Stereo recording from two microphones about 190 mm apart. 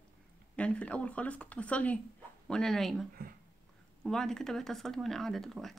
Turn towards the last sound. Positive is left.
turn(degrees=0)  # may be behind; listen again after turning